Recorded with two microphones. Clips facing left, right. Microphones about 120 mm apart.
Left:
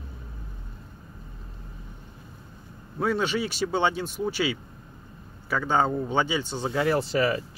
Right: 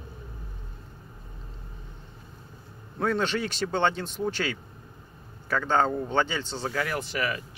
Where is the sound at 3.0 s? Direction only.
10° left (ahead or behind).